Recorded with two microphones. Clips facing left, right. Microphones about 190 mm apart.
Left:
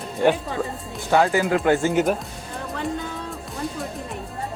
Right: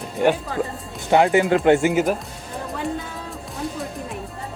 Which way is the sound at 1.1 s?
20° right (ahead or behind).